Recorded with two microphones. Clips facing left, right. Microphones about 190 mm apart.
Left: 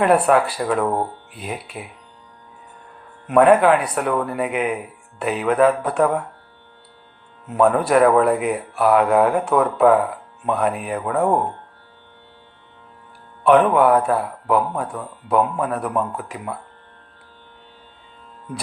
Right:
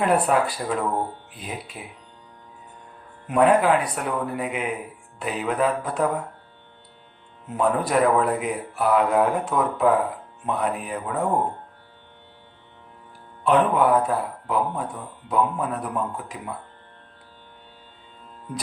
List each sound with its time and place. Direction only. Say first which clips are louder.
0.0 s speech: left 5 dB; 65° left (ahead or behind)
3.2 s speech: left 5 dB; 65° left (ahead or behind)
7.5 s speech: left 6 dB; 65° left (ahead or behind)
13.4 s speech: left 5 dB; 65° left (ahead or behind)